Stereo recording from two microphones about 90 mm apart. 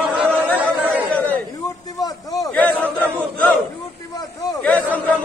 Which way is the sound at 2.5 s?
15° left (ahead or behind).